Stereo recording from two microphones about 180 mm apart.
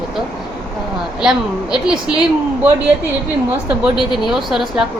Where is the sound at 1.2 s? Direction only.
5° right (ahead or behind).